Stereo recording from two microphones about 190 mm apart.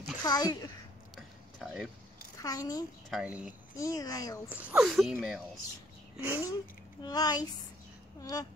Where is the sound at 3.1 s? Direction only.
5° right (ahead or behind).